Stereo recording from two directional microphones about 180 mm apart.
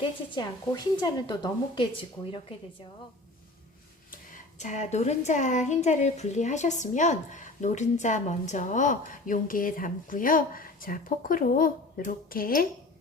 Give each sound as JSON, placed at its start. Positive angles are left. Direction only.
{"t": 0.0, "sound": "a woman's voice", "side_deg": 25}
{"t": 4.1, "sound": "speech", "side_deg": 45}